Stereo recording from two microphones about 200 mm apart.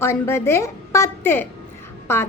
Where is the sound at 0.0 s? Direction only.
15° left (ahead or behind).